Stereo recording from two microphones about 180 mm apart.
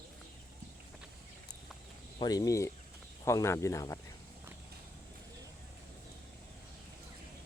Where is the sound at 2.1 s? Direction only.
20° left (ahead or behind).